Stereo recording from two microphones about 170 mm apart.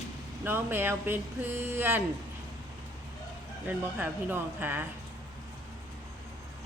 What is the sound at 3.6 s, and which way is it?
A woman's voice, 10° right (ahead or behind).